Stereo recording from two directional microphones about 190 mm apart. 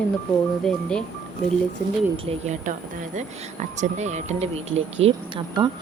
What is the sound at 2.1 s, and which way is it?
Speech, 30° right (ahead or behind).